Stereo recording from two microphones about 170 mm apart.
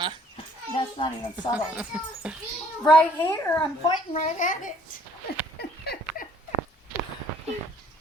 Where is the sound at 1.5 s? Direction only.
5° right (ahead or behind).